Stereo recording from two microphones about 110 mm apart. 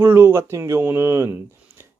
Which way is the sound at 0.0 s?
20° right (ahead or behind).